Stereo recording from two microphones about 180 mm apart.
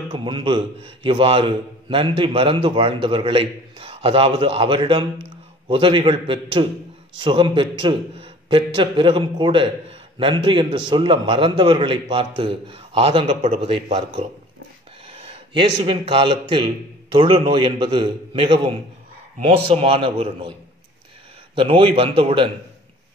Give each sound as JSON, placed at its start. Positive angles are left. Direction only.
{"t": 0.1, "sound": "a man's voice", "side_deg": -25}
{"t": 21.5, "sound": "a man's voice", "side_deg": -30}